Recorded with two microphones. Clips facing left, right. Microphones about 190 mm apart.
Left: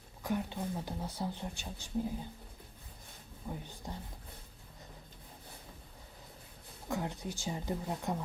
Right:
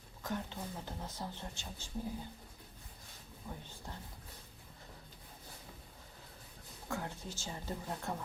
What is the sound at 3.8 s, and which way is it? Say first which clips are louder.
Speech: left 4 dB; 15° left (ahead or behind).